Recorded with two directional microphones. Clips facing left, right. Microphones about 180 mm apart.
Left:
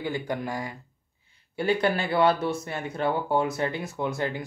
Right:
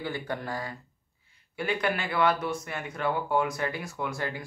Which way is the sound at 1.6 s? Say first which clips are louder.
Left 5 dB; 30° left (ahead or behind).